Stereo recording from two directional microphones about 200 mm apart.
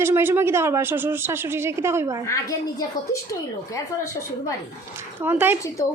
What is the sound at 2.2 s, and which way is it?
Speech, 15° left (ahead or behind).